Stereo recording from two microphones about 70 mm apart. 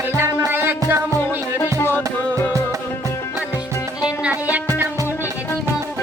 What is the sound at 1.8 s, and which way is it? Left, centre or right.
Music, left.